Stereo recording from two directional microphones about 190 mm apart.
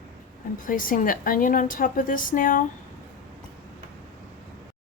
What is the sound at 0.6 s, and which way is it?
A woman's voice, 45° left (ahead or behind).